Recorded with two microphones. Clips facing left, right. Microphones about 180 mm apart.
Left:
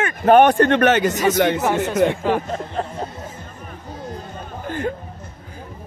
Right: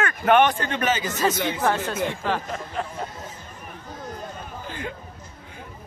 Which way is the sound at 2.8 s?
40° left (ahead or behind).